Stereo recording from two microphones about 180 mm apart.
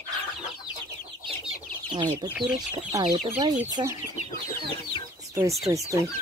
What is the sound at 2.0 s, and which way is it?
Speech, 25° right (ahead or behind).